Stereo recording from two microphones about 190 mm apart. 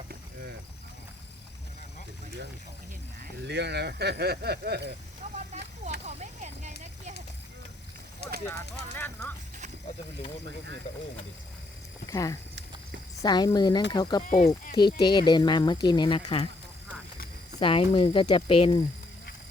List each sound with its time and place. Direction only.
3.4 s speech: 60° right (ahead or behind)
5.2 s a sound: 35° right (ahead or behind)
6.1 s speech: 35° right (ahead or behind)
9.0 s speech: 10° left (ahead or behind)
12.0 s speech: 20° left (ahead or behind)
14.2 s speech: 45° left (ahead or behind)
14.8 s speech: 25° left (ahead or behind)
17.6 s speech: 30° left (ahead or behind)